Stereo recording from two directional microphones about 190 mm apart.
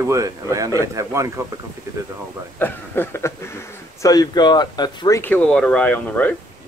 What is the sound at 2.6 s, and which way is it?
Speech, 10° left (ahead or behind).